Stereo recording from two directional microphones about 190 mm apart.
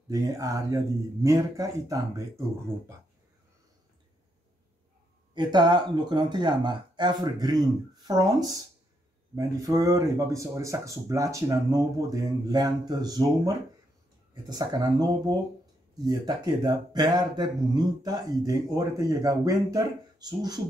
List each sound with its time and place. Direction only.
0.1 s speech: 20° right (ahead or behind)
5.3 s speech: 20° right (ahead or behind)